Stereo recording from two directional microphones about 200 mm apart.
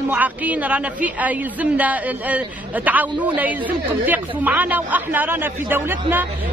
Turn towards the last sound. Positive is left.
turn(degrees=-10)  # may be behind; listen again after turning